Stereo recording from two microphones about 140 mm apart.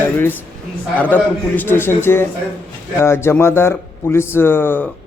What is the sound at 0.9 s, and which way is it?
A man's voice, 10° left (ahead or behind).